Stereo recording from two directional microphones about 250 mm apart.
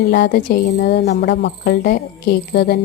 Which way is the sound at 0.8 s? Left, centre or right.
Left.